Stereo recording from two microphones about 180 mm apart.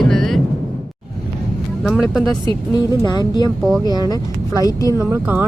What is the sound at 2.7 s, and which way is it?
Speech, 20° left (ahead or behind).